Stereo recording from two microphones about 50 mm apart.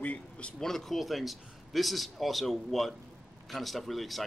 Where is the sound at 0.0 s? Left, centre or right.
Left.